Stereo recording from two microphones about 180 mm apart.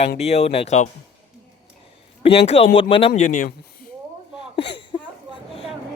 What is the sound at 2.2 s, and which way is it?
Speech, 30° left (ahead or behind).